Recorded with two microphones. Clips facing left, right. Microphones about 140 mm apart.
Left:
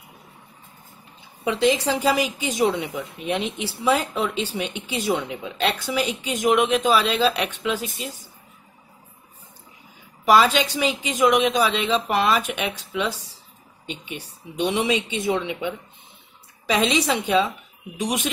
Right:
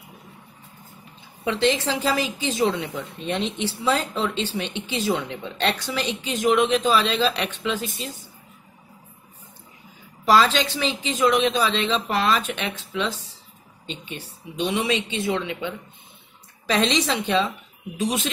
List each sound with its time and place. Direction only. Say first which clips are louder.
1.4 s a woman's voice: left 2 dB; 10° left (ahead or behind)
10.2 s a woman's voice: left 1 dB; 10° left (ahead or behind)